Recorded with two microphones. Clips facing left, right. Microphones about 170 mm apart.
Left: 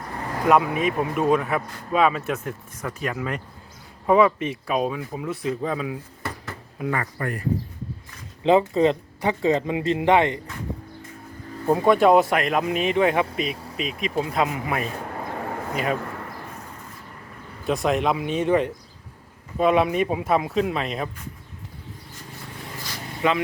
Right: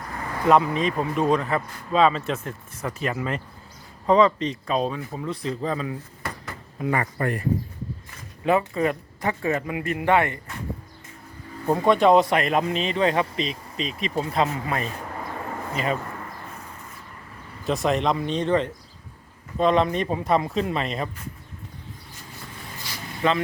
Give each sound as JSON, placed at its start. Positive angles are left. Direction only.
{"t": 0.4, "sound": "speech", "side_deg": 10}
{"t": 6.9, "sound": "speech", "side_deg": -25}
{"t": 8.4, "sound": "speech", "side_deg": 25}
{"t": 11.7, "sound": "speech", "side_deg": 5}
{"t": 12.6, "sound": "speech", "side_deg": 10}
{"t": 17.7, "sound": "speech", "side_deg": 0}
{"t": 23.2, "sound": "speech", "side_deg": 10}